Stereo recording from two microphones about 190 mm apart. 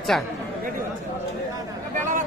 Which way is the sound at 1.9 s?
40° right (ahead or behind).